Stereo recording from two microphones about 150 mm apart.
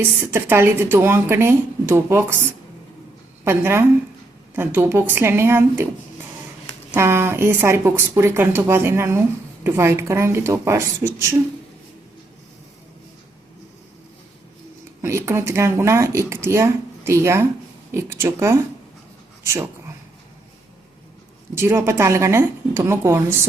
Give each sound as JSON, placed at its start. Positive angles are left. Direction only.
{"t": 0.0, "sound": "speech", "side_deg": -15}
{"t": 3.4, "sound": "speech", "side_deg": -15}
{"t": 6.9, "sound": "speech", "side_deg": -15}
{"t": 15.0, "sound": "speech", "side_deg": -15}
{"t": 21.5, "sound": "speech", "side_deg": -15}